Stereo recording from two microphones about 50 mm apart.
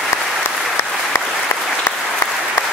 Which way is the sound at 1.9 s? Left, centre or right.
Left.